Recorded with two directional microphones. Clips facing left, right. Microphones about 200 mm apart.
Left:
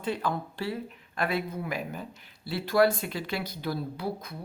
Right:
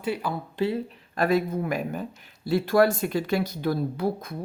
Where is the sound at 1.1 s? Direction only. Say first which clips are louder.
Right 7 dB; 45° right (ahead or behind).